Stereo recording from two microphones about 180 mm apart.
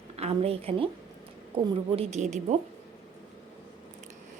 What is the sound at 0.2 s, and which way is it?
A woman's voice, 35° right (ahead or behind).